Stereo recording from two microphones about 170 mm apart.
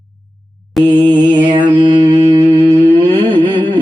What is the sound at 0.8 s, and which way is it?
Mantra, centre (ahead or behind).